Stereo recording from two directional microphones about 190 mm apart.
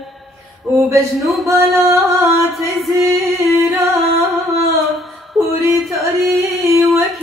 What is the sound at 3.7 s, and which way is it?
Music, 10° right (ahead or behind).